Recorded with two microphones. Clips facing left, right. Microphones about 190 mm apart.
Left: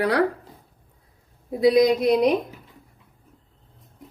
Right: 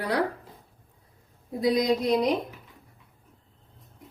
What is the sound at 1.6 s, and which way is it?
Speech, 70° left (ahead or behind).